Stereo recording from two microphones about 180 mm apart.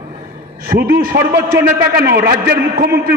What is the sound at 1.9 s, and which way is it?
Speech, 65° right (ahead or behind).